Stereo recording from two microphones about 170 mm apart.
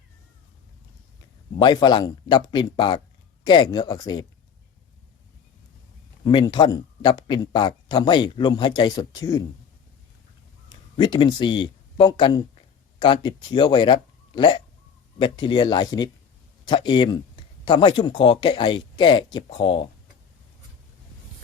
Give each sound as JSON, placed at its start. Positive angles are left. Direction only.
{"t": 1.6, "sound": "speech", "side_deg": 25}
{"t": 6.2, "sound": "speech", "side_deg": 25}
{"t": 10.7, "sound": "speech", "side_deg": 25}